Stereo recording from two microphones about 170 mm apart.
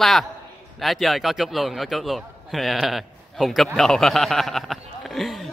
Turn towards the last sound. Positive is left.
turn(degrees=0)  # may be behind; listen again after turning